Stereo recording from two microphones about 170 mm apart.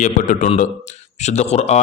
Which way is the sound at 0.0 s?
45° left (ahead or behind).